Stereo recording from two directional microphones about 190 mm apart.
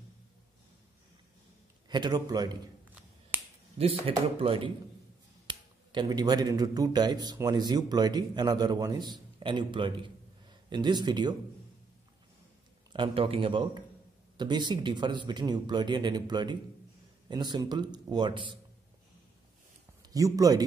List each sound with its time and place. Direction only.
1.9 s speech: 20° right (ahead or behind)
3.3 s finger snapping: 10° right (ahead or behind)
3.7 s speech: 30° right (ahead or behind)
12.9 s speech: 25° right (ahead or behind)
20.0 s a man's voice: 20° right (ahead or behind)